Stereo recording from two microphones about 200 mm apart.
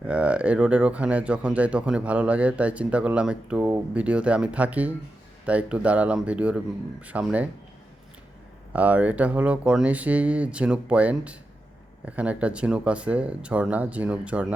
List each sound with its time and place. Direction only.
0.0 s speech: 5° right (ahead or behind)
8.7 s speech: 5° right (ahead or behind)